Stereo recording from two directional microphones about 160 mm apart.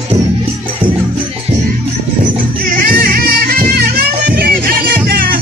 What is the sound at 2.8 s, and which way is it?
Music, 65° right (ahead or behind).